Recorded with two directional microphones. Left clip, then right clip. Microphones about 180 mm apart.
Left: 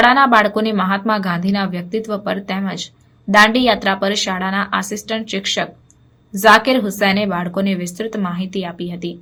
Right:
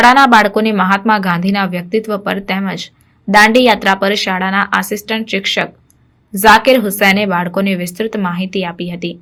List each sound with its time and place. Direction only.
0.0 s a woman's voice: 30° right (ahead or behind)